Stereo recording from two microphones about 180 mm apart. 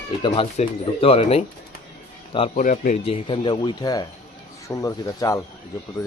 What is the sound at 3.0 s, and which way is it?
Speech, 30° left (ahead or behind).